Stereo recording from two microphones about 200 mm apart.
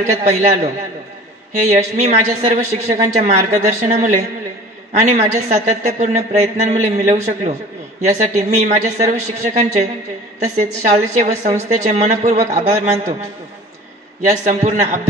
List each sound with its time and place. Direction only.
0.0 s a woman's voice: 35° right (ahead or behind)
14.4 s a woman's voice: 35° right (ahead or behind)